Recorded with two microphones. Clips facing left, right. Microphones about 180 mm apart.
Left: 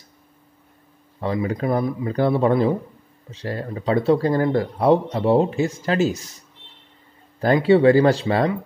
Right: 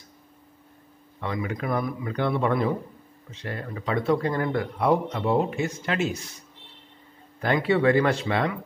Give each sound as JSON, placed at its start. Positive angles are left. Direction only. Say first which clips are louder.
{"t": 1.2, "sound": "speech", "louder": "left 6 dB", "side_deg": 35}
{"t": 7.3, "sound": "speech", "louder": "left 7 dB", "side_deg": 35}